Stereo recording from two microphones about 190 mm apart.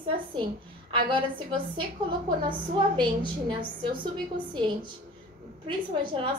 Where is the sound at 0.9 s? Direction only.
25° right (ahead or behind).